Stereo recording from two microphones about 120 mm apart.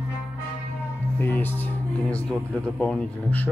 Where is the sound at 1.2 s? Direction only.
15° left (ahead or behind).